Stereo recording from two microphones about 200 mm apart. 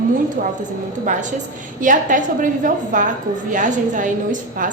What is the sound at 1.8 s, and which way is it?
A woman's voice, 40° right (ahead or behind).